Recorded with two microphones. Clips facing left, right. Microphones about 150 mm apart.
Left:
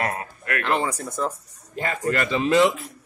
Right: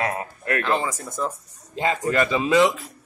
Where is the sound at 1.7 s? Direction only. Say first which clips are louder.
Right 4 dB; 20° right (ahead or behind).